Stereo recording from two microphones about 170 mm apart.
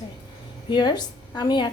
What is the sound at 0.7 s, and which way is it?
Speech, 25° left (ahead or behind).